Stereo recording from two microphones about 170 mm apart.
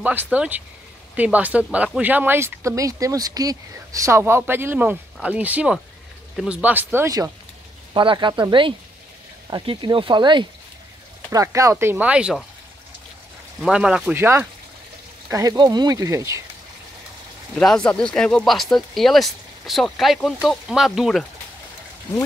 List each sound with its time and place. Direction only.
0.0 s speech: 10° right (ahead or behind)
7.9 s speech: 30° right (ahead or behind); by 12.4 s 5° right (ahead or behind)
13.6 s speech: 5° right (ahead or behind)
17.6 s speech: 5° left (ahead or behind)